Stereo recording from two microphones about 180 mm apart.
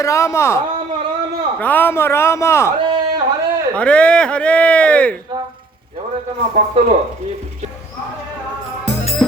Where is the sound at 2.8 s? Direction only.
25° right (ahead or behind).